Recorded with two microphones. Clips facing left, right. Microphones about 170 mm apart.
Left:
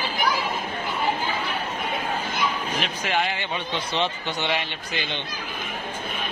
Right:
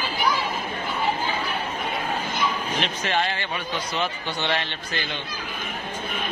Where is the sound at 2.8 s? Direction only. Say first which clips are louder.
Right 1 dB; 10° left (ahead or behind).